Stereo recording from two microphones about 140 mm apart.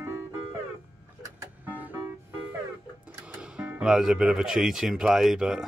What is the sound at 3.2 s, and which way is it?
Speech, 5° right (ahead or behind).